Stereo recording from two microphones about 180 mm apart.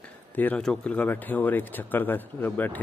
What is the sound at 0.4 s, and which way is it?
Speech, 5° left (ahead or behind).